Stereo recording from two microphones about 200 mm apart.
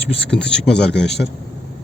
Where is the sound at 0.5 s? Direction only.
55° left (ahead or behind).